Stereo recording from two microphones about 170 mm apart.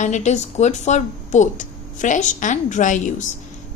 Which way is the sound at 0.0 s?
45° left (ahead or behind).